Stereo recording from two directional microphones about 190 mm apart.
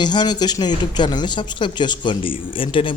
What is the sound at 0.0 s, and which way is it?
Speech, 25° left (ahead or behind).